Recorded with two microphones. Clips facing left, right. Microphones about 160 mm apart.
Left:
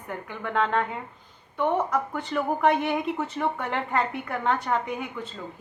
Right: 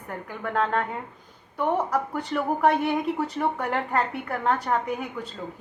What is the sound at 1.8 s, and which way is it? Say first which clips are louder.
A woman's voice: right 1 dB; 35° right (ahead or behind).